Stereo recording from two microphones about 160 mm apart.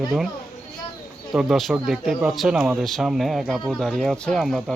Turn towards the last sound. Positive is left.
turn(degrees=0)  # may be behind; listen again after turning